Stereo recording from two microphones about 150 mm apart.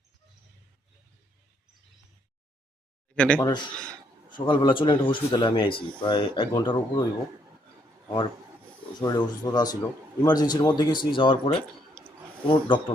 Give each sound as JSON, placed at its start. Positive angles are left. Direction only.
{"t": 3.2, "sound": "speech", "side_deg": 10}
{"t": 3.4, "sound": "speech", "side_deg": 30}
{"t": 9.0, "sound": "a man's voice", "side_deg": 30}